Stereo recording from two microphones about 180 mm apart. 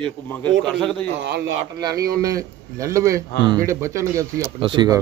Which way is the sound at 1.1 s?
65° right (ahead or behind).